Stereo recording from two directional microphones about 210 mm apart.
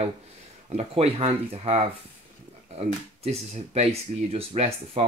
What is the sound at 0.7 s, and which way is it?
Speech, 30° right (ahead or behind).